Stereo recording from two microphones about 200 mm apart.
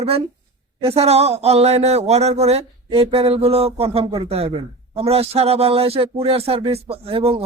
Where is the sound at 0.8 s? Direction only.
30° right (ahead or behind).